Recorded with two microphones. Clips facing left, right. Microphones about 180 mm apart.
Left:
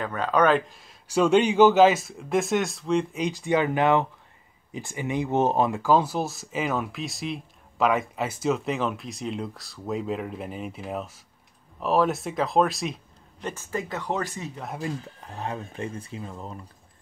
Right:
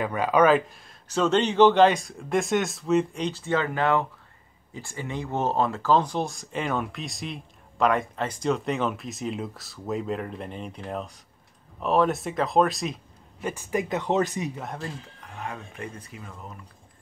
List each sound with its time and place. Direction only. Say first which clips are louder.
0.0 s speech: right 2 dB; 10° right (ahead or behind)
1.0 s speech: left 3 dB; 10° left (ahead or behind)
3.2 s speech: left 2 dB; 10° left (ahead or behind); by 14.5 s 20° right (ahead or behind)
14.5 s speech: even; centre (ahead or behind)
15.1 s speech: left 3 dB; 30° left (ahead or behind)